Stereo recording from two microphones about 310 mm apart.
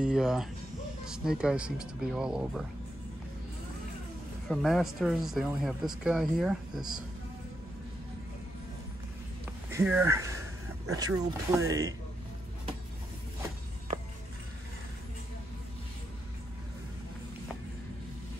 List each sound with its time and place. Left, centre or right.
0.0 s speech: centre
4.5 s speech: centre
9.7 s speech: centre